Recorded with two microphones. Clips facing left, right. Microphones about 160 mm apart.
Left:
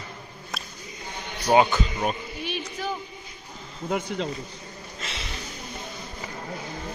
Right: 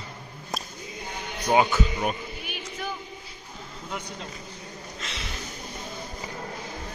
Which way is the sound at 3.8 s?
55° left (ahead or behind).